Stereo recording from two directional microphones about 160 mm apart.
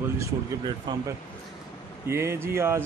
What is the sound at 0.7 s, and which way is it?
Speech, 25° right (ahead or behind).